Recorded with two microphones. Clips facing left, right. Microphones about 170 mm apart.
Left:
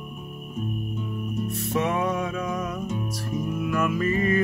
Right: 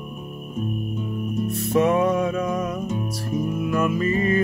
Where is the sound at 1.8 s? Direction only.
40° right (ahead or behind).